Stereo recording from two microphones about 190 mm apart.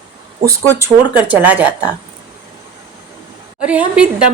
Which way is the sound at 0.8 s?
10° right (ahead or behind).